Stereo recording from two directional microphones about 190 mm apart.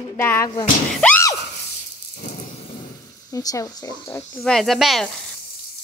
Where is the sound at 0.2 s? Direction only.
10° left (ahead or behind).